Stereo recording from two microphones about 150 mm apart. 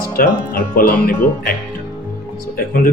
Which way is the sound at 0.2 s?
75° left (ahead or behind).